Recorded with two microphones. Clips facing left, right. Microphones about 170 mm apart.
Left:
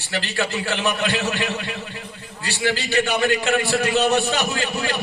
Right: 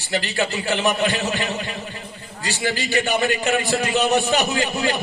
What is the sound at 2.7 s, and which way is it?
A man's voice, 15° right (ahead or behind).